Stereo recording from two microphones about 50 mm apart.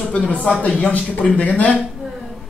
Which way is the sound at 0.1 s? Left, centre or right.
Left.